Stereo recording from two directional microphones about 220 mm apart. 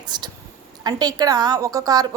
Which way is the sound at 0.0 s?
20° right (ahead or behind).